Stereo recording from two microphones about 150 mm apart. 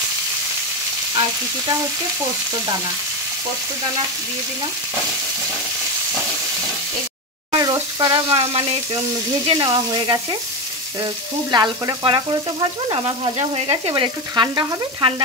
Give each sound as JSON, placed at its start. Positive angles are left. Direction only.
{"t": 7.5, "sound": "frying", "side_deg": -25}
{"t": 8.4, "sound": "frying", "side_deg": -40}
{"t": 9.5, "sound": "speech", "side_deg": -25}
{"t": 11.5, "sound": "frying", "side_deg": -30}